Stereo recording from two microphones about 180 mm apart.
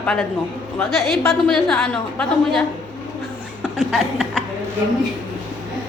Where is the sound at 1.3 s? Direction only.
5° left (ahead or behind).